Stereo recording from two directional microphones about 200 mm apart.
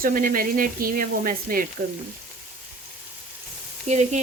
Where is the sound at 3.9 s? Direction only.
35° right (ahead or behind).